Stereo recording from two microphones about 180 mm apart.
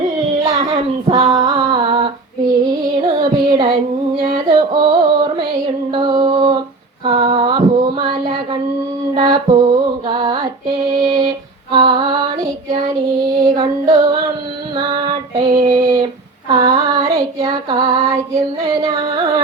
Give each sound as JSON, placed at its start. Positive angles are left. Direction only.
{"t": 0.4, "sound": "music", "side_deg": -25}
{"t": 3.1, "sound": "music", "side_deg": -30}
{"t": 7.0, "sound": "a sound", "side_deg": -30}
{"t": 9.1, "sound": "music", "side_deg": -25}
{"t": 11.7, "sound": "female singing", "side_deg": -25}
{"t": 13.4, "sound": "female singing", "side_deg": -20}
{"t": 18.1, "sound": "music", "side_deg": -20}